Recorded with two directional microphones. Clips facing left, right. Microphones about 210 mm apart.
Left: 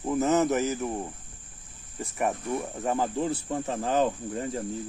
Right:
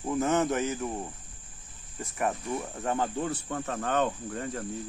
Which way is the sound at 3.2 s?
30° left (ahead or behind).